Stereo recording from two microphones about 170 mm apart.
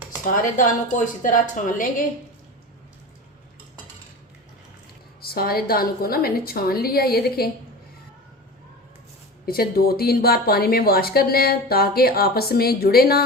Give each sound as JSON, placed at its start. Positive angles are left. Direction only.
{"t": 0.4, "sound": "a woman's voice", "side_deg": 50}
{"t": 5.2, "sound": "speech", "side_deg": 65}
{"t": 9.5, "sound": "speech", "side_deg": 60}